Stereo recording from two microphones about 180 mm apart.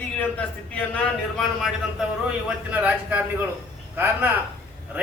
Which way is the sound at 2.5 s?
10° right (ahead or behind).